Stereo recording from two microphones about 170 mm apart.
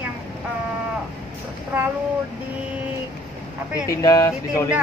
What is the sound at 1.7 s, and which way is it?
Speech, 10° right (ahead or behind).